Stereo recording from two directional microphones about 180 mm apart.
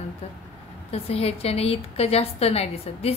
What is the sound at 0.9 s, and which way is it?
A woman's voice, 35° left (ahead or behind).